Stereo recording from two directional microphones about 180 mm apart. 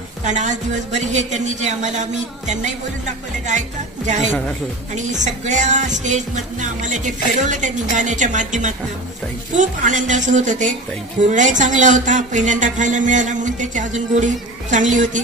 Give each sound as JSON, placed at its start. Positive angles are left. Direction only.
{"t": 0.2, "sound": "a woman's voice", "side_deg": -40}
{"t": 1.1, "sound": "a sound", "side_deg": -40}
{"t": 5.1, "sound": "speech", "side_deg": -40}